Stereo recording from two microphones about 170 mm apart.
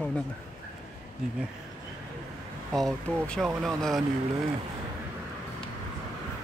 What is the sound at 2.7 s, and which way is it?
Speech, centre (ahead or behind).